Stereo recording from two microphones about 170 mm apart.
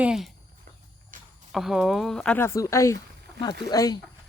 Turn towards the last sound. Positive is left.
turn(degrees=20)  # may be behind; listen again after turning